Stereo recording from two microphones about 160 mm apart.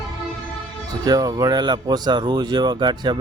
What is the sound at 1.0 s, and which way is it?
Speech, 25° right (ahead or behind).